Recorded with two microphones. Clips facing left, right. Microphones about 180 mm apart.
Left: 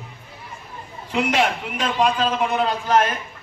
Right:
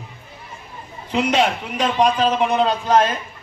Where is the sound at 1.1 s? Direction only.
20° right (ahead or behind).